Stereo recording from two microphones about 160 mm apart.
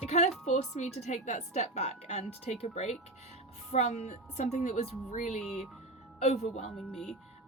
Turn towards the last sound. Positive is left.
turn(degrees=5)  # may be behind; listen again after turning